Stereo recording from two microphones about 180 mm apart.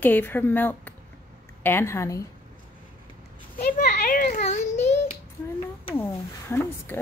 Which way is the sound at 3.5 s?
50° left (ahead or behind).